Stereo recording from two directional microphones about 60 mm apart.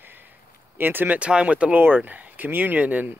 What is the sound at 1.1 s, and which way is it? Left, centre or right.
Speech, right.